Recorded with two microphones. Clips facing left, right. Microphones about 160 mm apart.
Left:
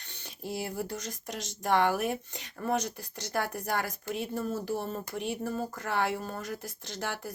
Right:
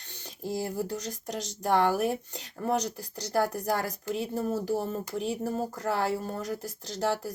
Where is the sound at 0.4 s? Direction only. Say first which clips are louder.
Right 3 dB; 40° right (ahead or behind).